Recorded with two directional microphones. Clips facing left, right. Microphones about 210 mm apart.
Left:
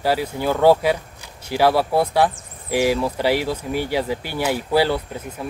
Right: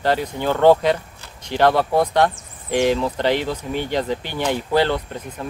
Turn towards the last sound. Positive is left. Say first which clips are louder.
# even
turn(degrees=5)  # may be behind; listen again after turning